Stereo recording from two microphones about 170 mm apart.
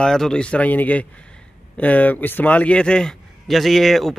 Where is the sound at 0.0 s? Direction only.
5° left (ahead or behind).